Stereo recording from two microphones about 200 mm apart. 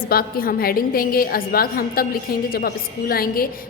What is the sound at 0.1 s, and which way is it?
A woman's voice, 50° left (ahead or behind).